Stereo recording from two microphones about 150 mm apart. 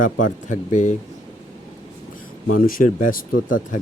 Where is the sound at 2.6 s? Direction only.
65° left (ahead or behind).